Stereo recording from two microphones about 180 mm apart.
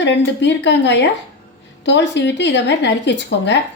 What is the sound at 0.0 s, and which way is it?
A woman's voice, 75° left (ahead or behind).